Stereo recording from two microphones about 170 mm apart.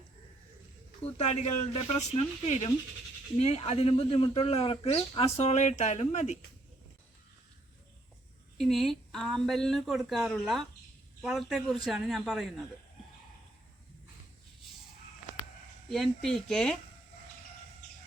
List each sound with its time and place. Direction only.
1.2 s speech: 40° left (ahead or behind)
3.3 s speech: 40° left (ahead or behind)
8.5 s a woman's voice: centre (ahead or behind)
15.9 s a woman's voice: centre (ahead or behind)